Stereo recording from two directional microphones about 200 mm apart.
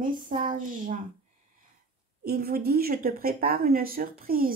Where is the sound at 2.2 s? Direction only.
45° right (ahead or behind).